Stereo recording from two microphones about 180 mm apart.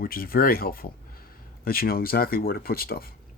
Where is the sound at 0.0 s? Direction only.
55° left (ahead or behind).